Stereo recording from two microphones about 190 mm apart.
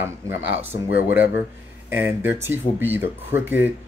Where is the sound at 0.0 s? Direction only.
10° right (ahead or behind).